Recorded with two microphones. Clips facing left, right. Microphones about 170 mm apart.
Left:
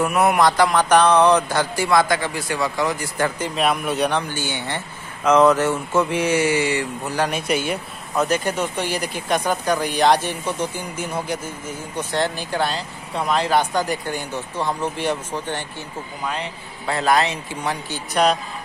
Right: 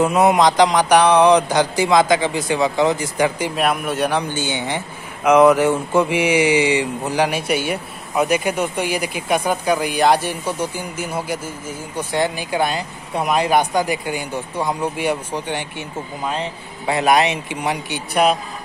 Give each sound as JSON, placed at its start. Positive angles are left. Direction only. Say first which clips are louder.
{"t": 0.0, "sound": "speech", "louder": "right 3 dB", "side_deg": -20}
{"t": 4.2, "sound": "speech", "louder": "right 4 dB", "side_deg": -20}
{"t": 16.8, "sound": "speech", "louder": "right 3 dB", "side_deg": -15}